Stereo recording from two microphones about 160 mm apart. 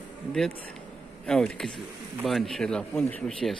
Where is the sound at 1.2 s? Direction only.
5° left (ahead or behind).